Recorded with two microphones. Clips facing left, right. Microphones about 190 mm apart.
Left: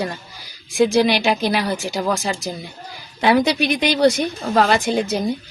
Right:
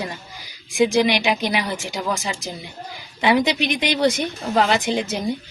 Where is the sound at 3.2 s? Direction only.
20° right (ahead or behind).